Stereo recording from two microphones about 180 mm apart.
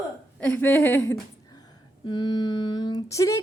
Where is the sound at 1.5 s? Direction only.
25° left (ahead or behind).